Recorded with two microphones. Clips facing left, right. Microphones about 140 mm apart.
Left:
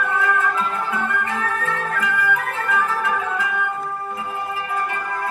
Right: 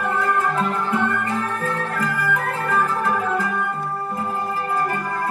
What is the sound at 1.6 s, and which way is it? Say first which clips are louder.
Music: even; 35° right (ahead or behind).